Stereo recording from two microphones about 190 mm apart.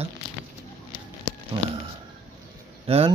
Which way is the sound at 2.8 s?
30° right (ahead or behind).